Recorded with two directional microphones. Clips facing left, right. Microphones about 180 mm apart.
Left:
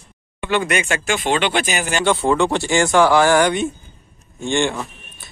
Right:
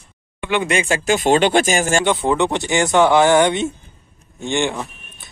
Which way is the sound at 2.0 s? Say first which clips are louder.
Left 1 dB; 20° right (ahead or behind).